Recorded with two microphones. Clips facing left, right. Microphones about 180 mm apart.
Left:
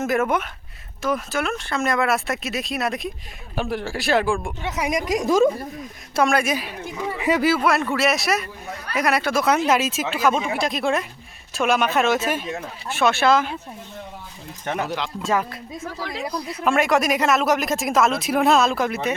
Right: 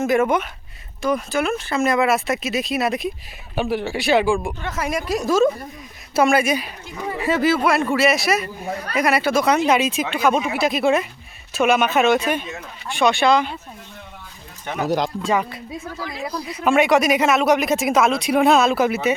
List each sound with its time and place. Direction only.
0.0 s speech: centre (ahead or behind)
4.6 s speech: 15° left (ahead or behind)
6.1 s speech: 5° right (ahead or behind)
7.2 s speech: 15° left (ahead or behind)
14.8 s speech: 40° right (ahead or behind)
15.2 s speech: centre (ahead or behind)